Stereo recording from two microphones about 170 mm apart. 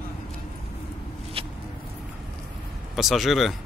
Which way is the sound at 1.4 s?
35° right (ahead or behind).